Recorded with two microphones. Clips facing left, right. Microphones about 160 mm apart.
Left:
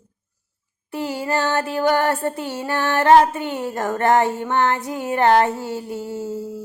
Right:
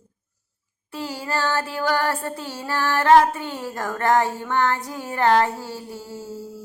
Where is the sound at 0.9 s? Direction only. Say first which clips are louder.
Left 5 dB; 20° left (ahead or behind).